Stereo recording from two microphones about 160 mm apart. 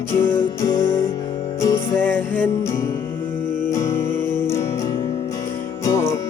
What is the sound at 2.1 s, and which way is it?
Music, 10° left (ahead or behind).